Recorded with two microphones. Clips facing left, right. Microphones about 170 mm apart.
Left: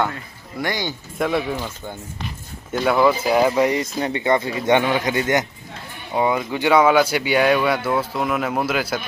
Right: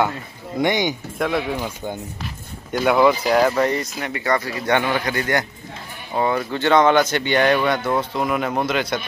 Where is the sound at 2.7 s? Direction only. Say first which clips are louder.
Right 1 dB; centre (ahead or behind).